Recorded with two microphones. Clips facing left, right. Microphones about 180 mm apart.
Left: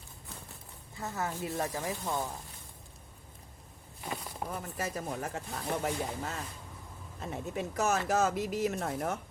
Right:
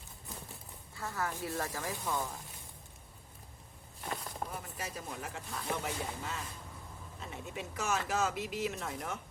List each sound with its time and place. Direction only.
0.9 s speech: 20° left (ahead or behind)
4.0 s a sound: centre (ahead or behind)
4.4 s speech: 50° left (ahead or behind)